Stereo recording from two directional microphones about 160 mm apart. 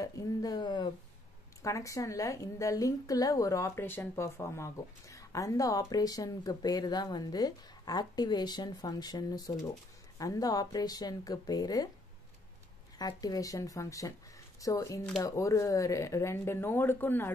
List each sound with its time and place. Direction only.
0.0 s a woman's voice: 20° left (ahead or behind)
13.0 s a woman's voice: 25° left (ahead or behind)